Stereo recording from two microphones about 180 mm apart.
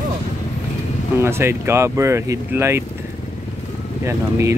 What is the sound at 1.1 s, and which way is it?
Speech, 15° right (ahead or behind).